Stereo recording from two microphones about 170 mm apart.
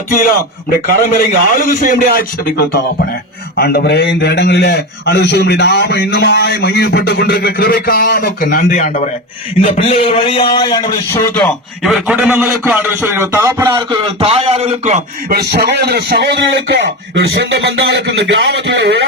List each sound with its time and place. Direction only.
0.1 s a man's voice: 55° left (ahead or behind)
3.6 s a man's voice: 70° left (ahead or behind); by 9.0 s 50° left (ahead or behind)
9.6 s a man's voice: 35° left (ahead or behind)
11.1 s speech: 15° left (ahead or behind)
11.8 s a man's voice: 5° right (ahead or behind)
14.2 s a man's voice: 35° right (ahead or behind)
15.3 s a man's voice: 70° right (ahead or behind); by 19.0 s 90° right